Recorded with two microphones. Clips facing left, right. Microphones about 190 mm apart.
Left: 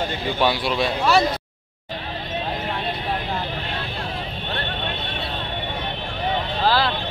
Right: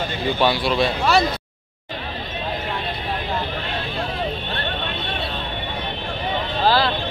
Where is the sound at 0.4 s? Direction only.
15° left (ahead or behind).